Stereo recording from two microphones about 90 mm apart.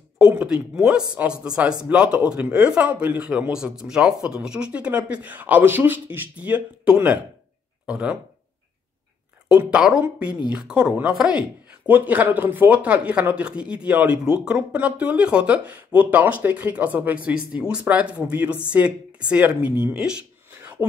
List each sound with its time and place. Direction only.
0.5 s speech: 5° right (ahead or behind)
9.7 s speech: 10° right (ahead or behind)